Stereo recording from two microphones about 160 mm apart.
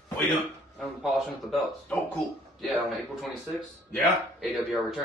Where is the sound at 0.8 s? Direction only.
Centre (ahead or behind).